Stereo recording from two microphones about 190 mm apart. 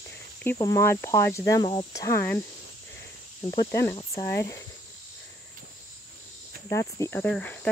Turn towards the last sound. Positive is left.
turn(degrees=10)  # may be behind; listen again after turning